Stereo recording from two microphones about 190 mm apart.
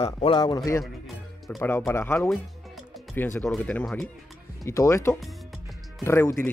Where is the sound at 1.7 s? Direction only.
10° left (ahead or behind).